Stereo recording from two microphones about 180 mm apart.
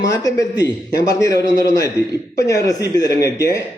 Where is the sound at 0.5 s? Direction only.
75° left (ahead or behind).